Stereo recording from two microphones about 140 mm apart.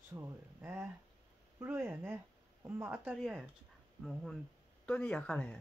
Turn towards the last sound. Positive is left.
turn(degrees=10)  # may be behind; listen again after turning